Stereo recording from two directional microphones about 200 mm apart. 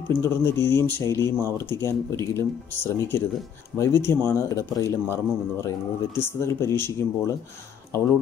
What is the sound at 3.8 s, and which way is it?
Speech, 15° left (ahead or behind).